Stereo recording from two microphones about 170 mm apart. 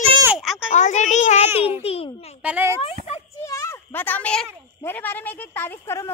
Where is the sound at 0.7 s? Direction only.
45° left (ahead or behind).